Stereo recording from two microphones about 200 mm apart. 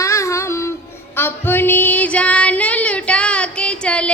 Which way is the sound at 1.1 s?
10° left (ahead or behind).